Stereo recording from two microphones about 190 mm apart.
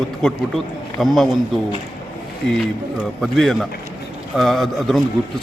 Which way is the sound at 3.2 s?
Centre (ahead or behind).